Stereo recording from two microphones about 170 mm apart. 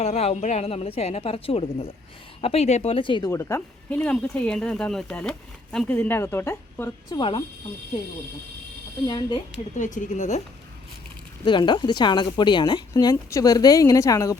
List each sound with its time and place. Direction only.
0.0 s a woman's voice: 35° left (ahead or behind)
3.3 s speech: 10° left (ahead or behind)
7.2 s speech: 30° left (ahead or behind)
9.0 s speech: 20° left (ahead or behind)
9.7 s a woman's voice: 50° left (ahead or behind)
11.4 s speech: 25° left (ahead or behind)